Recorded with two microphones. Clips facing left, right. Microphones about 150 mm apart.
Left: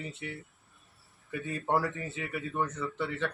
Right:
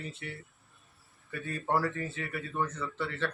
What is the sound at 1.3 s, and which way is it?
A man's voice, 15° left (ahead or behind).